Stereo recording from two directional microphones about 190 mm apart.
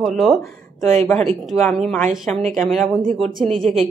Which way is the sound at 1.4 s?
Centre (ahead or behind).